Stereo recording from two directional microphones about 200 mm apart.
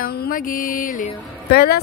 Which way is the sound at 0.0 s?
50° left (ahead or behind).